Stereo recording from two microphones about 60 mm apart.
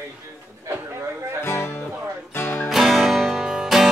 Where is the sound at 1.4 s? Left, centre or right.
Left.